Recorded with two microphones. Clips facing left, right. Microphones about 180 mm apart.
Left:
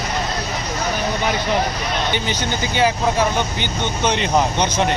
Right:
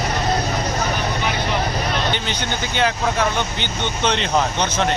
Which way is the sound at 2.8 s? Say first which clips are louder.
Left 2 dB; 10° left (ahead or behind).